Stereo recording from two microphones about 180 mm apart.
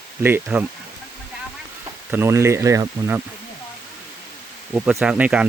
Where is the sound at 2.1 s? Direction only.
15° right (ahead or behind).